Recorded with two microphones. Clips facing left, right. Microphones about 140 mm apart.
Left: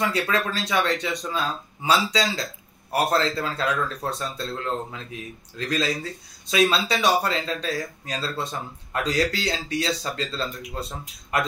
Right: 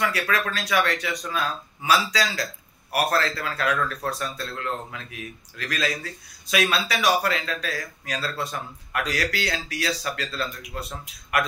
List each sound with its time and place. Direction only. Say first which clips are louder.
0.3 s speech: left 1 dB; 25° left (ahead or behind)